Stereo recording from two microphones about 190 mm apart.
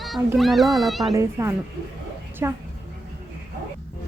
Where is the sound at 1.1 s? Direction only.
15° right (ahead or behind).